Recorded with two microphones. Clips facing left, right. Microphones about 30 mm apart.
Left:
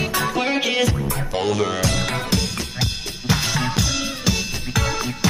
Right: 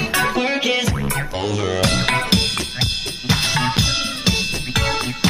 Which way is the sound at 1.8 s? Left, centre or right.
Right.